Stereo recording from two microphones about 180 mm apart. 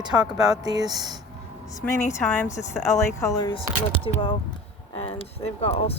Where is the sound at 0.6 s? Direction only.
20° right (ahead or behind).